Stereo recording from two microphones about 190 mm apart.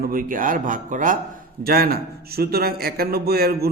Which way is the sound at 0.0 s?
50° right (ahead or behind).